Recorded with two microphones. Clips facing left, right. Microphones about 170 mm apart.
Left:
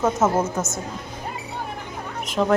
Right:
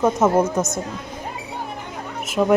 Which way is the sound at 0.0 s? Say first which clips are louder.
Right 3 dB; 15° right (ahead or behind).